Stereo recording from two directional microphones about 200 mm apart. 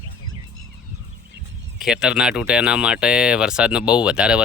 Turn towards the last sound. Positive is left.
turn(degrees=-5)  # may be behind; listen again after turning